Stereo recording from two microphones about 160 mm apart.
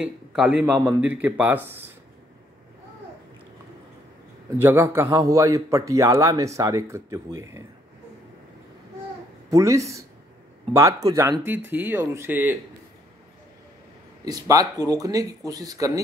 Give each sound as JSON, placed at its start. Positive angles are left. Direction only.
{"t": 0.0, "sound": "speech", "side_deg": -5}
{"t": 4.6, "sound": "speech", "side_deg": -15}
{"t": 9.5, "sound": "speech", "side_deg": -20}
{"t": 14.2, "sound": "speech", "side_deg": -20}